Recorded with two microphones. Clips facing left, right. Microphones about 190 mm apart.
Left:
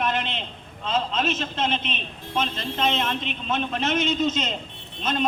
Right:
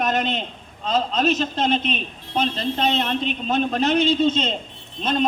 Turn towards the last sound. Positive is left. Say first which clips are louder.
# right 4 dB
turn(degrees=-35)  # may be behind; listen again after turning